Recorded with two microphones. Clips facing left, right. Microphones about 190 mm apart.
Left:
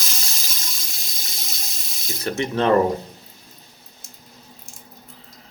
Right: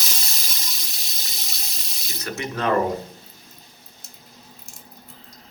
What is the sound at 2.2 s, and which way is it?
Speech, 30° left (ahead or behind).